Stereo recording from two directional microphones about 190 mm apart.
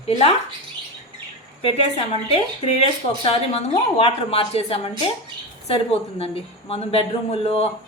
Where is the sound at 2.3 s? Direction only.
30° left (ahead or behind).